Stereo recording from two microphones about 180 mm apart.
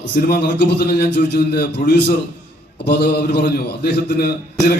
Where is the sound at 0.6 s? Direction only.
65° left (ahead or behind).